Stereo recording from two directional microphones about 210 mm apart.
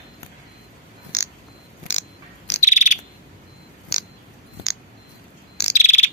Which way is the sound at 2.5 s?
35° left (ahead or behind).